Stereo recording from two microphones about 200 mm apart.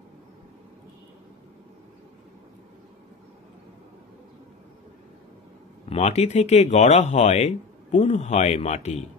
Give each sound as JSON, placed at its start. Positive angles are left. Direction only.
{"t": 5.9, "sound": "speech", "side_deg": 30}